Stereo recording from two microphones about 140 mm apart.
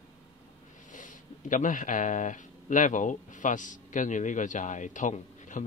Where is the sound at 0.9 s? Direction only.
65° left (ahead or behind).